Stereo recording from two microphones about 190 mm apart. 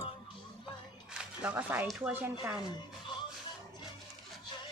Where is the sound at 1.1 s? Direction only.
10° right (ahead or behind).